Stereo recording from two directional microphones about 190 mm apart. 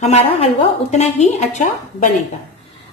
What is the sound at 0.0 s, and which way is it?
A woman's voice, 35° left (ahead or behind).